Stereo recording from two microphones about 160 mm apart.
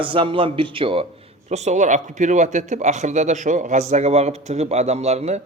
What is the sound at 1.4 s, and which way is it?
Speech, 45° right (ahead or behind).